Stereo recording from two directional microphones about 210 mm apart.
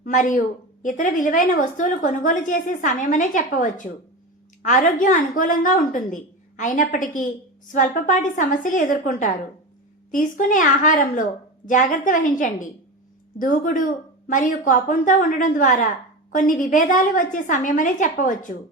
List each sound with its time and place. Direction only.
0.0 s a woman's voice: 40° left (ahead or behind)